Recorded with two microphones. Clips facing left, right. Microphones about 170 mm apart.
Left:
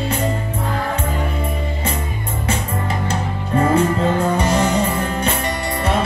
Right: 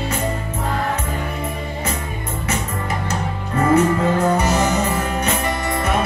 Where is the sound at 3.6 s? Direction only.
30° left (ahead or behind).